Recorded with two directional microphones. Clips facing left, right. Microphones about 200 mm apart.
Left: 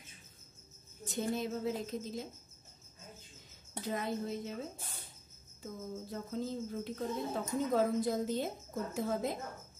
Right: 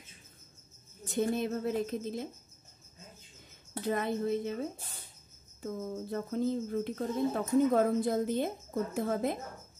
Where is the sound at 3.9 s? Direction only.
60° right (ahead or behind).